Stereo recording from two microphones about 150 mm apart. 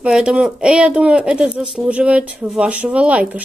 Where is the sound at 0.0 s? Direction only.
5° right (ahead or behind).